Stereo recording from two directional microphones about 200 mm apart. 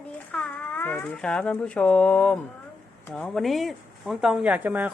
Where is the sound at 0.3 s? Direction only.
10° left (ahead or behind).